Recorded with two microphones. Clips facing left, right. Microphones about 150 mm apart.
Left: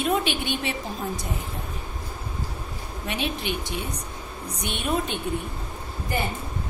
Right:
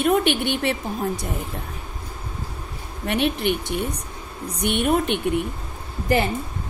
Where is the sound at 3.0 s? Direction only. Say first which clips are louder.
Right 7 dB; 60° right (ahead or behind).